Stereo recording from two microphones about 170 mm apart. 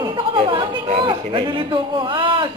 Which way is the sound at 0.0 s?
30° right (ahead or behind).